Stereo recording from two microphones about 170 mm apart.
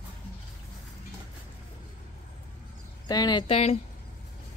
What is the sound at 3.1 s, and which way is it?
Speech, 25° left (ahead or behind).